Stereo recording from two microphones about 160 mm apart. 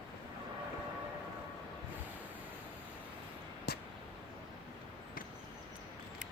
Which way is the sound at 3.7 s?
80° left.